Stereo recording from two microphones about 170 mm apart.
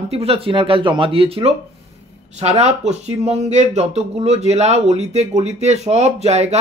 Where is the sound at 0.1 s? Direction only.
35° right (ahead or behind).